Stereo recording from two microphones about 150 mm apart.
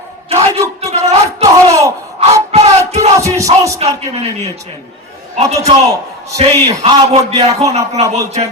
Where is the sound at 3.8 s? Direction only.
45° right (ahead or behind).